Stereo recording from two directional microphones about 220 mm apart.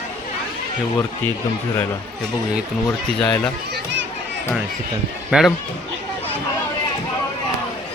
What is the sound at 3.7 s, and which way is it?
Children playing, 55° right (ahead or behind).